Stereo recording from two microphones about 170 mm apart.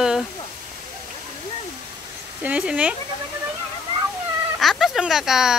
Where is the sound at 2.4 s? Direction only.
10° right (ahead or behind).